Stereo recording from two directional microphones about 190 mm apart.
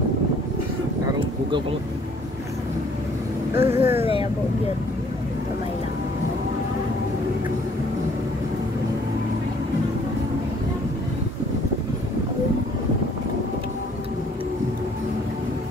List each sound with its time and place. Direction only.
3.5 s speech: 10° right (ahead or behind)